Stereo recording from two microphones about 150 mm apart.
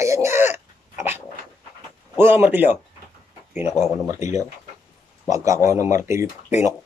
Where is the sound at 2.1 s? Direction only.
15° right (ahead or behind).